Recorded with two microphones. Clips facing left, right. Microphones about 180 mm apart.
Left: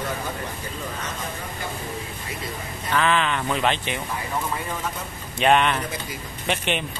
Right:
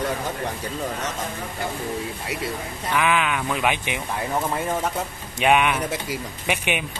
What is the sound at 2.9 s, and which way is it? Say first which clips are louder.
Speech: even; 10° right (ahead or behind).